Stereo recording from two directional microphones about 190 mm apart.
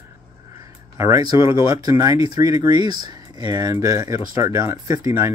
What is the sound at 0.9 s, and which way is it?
Speech, 15° right (ahead or behind).